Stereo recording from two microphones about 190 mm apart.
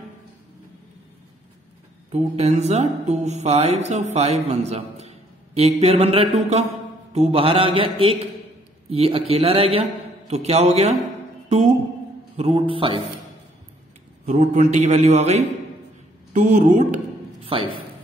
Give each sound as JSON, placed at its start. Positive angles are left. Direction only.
{"t": 2.1, "sound": "a man's voice", "side_deg": -35}
{"t": 11.4, "sound": "music", "side_deg": -35}
{"t": 12.4, "sound": "a man's voice", "side_deg": -35}
{"t": 14.2, "sound": "a woman's voice", "side_deg": -40}